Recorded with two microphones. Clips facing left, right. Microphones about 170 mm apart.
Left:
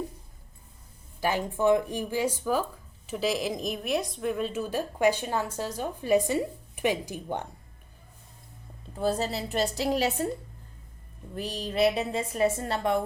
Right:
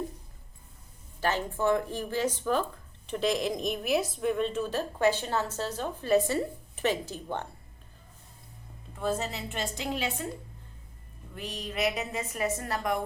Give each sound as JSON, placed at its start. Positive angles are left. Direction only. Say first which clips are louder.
{"t": 1.2, "sound": "speech", "louder": "left 3 dB", "side_deg": 10}
{"t": 9.0, "sound": "a woman's voice", "louder": "left 3 dB", "side_deg": 35}
{"t": 11.3, "sound": "a woman's voice", "louder": "left 6 dB", "side_deg": 35}